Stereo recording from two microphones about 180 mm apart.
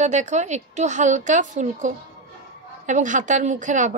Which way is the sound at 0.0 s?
40° right (ahead or behind).